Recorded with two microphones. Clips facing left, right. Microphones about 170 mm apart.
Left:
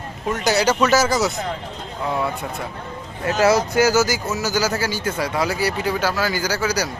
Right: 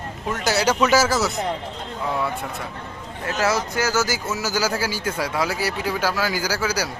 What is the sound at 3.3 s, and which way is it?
Speech, 30° left (ahead or behind).